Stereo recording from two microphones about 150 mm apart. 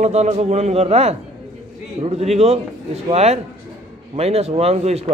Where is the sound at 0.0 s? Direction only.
45° right (ahead or behind).